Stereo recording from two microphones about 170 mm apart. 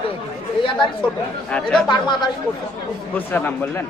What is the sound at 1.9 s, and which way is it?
Speech, 25° left (ahead or behind).